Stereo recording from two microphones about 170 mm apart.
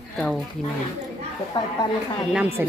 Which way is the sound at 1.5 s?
30° left (ahead or behind).